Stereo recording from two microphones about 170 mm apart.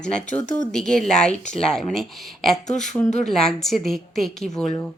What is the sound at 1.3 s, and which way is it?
Speech, 45° left (ahead or behind).